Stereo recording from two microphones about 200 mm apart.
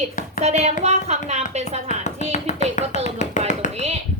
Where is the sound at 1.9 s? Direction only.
35° left (ahead or behind).